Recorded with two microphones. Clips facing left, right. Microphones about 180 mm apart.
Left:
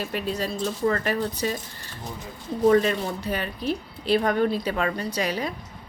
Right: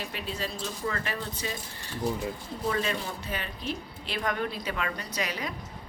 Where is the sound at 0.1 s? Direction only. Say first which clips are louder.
Left 7 dB; 40° left (ahead or behind).